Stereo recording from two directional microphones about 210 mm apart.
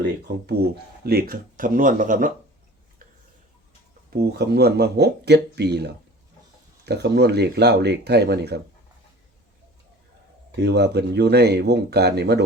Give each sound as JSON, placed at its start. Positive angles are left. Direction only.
{"t": 0.4, "sound": "a man's voice", "side_deg": -50}
{"t": 4.1, "sound": "speech", "side_deg": -50}
{"t": 10.5, "sound": "speech", "side_deg": -55}